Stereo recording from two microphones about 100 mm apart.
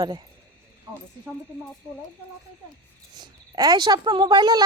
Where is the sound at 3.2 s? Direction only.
45° right (ahead or behind).